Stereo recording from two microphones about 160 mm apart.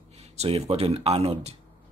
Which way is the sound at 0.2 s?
40° right (ahead or behind).